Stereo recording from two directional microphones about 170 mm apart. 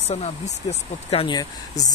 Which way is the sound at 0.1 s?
40° left (ahead or behind).